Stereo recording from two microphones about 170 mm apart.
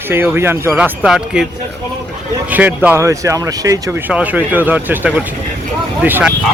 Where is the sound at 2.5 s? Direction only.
10° right (ahead or behind).